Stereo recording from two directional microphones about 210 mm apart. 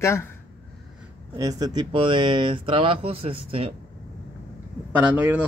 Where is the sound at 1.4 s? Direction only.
15° right (ahead or behind).